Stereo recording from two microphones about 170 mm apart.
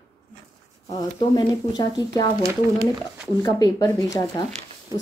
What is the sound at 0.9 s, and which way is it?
Speech, 25° left (ahead or behind).